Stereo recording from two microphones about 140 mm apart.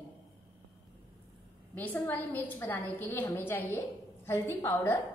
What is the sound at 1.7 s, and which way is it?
A woman's voice, 15° left (ahead or behind).